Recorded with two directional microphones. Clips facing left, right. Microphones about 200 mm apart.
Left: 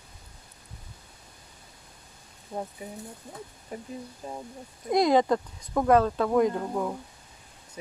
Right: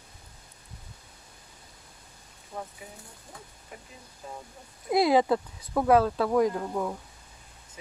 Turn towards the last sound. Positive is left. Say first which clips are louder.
# left 1 dB
turn(degrees=5)  # may be behind; listen again after turning